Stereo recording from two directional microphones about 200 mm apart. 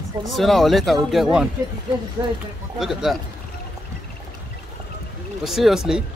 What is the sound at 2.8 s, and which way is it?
Speech, centre (ahead or behind).